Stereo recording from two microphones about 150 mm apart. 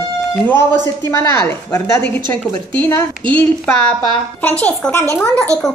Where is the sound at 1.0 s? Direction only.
20° left (ahead or behind).